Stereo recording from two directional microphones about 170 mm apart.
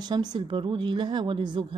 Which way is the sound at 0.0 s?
25° right (ahead or behind).